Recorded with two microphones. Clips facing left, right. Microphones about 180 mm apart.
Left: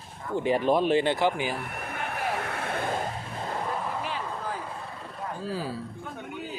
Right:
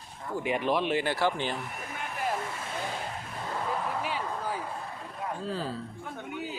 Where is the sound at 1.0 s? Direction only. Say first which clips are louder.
Left 4 dB; 20° left (ahead or behind).